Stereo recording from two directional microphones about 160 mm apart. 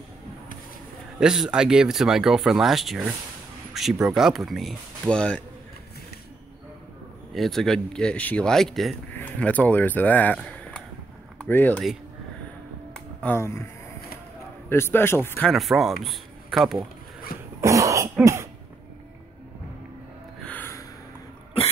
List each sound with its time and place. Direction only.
1.2 s speech: 5° right (ahead or behind)
7.3 s speech: centre (ahead or behind)
13.2 s a man's voice: 15° left (ahead or behind)
14.7 s a man's voice: 15° left (ahead or behind)
15.4 s speech: centre (ahead or behind)
17.6 s cough: 20° right (ahead or behind)
20.4 s gasp: 10° left (ahead or behind)